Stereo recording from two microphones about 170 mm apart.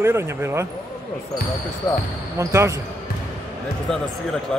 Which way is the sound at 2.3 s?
15° right (ahead or behind).